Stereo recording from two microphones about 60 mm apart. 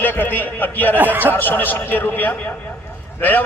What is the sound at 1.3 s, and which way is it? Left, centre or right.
A man's voice, left.